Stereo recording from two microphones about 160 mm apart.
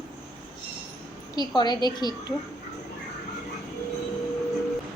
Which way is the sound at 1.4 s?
25° left (ahead or behind).